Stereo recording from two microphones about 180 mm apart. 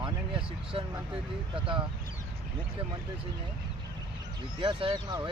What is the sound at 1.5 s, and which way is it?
Speech, 30° right (ahead or behind).